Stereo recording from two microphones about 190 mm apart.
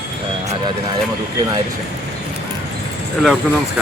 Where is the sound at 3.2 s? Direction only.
Centre (ahead or behind).